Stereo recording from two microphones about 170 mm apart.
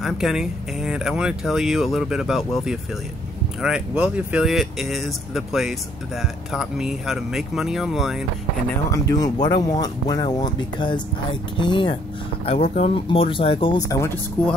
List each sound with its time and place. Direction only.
0.0 s speech: centre (ahead or behind)
8.9 s speech: 20° left (ahead or behind)